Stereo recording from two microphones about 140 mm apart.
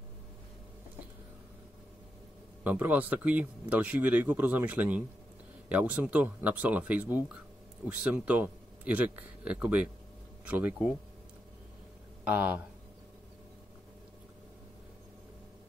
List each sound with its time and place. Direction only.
2.6 s speech: 10° right (ahead or behind)
12.3 s speech: 10° right (ahead or behind)